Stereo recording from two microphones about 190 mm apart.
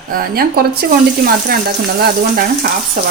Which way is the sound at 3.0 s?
45° right (ahead or behind).